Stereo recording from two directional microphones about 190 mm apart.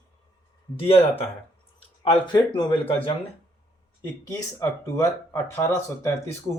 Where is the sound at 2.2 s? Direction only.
25° left (ahead or behind).